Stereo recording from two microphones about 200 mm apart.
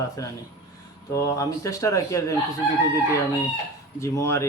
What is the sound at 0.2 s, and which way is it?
Speech, 15° left (ahead or behind).